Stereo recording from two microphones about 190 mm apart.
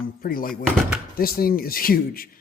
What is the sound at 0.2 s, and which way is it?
Speech, 50° left (ahead or behind).